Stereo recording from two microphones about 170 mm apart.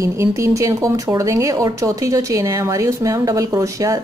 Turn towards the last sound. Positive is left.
turn(degrees=-20)  # may be behind; listen again after turning